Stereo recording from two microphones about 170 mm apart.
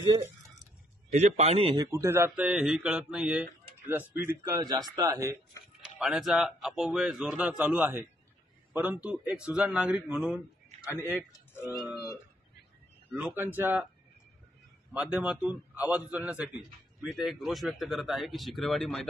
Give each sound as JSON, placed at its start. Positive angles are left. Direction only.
{"t": 0.0, "sound": "speech", "side_deg": -20}
{"t": 1.1, "sound": "a man's voice", "side_deg": -40}
{"t": 1.9, "sound": "a man's voice", "side_deg": -15}
{"t": 4.5, "sound": "a man's voice", "side_deg": -20}
{"t": 5.9, "sound": "a man's voice", "side_deg": -5}
{"t": 11.6, "sound": "a man's voice", "side_deg": 0}
{"t": 13.1, "sound": "a man's voice", "side_deg": -10}
{"t": 14.9, "sound": "a man's voice", "side_deg": -5}